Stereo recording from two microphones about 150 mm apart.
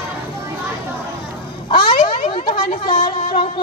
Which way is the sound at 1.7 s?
30° left (ahead or behind).